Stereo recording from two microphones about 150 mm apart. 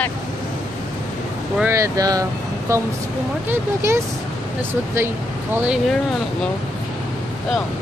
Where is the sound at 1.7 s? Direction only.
20° right (ahead or behind).